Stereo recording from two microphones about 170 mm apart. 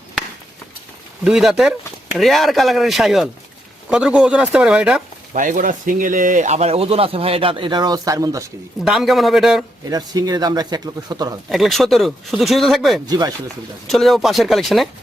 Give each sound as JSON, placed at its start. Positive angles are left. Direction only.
{"t": 1.2, "sound": "speech", "side_deg": -5}
{"t": 5.3, "sound": "speech", "side_deg": -50}
{"t": 8.8, "sound": "speech", "side_deg": -5}
{"t": 9.9, "sound": "speech", "side_deg": -20}
{"t": 11.4, "sound": "speech", "side_deg": 0}
{"t": 13.1, "sound": "speech", "side_deg": -20}
{"t": 13.8, "sound": "speech", "side_deg": 0}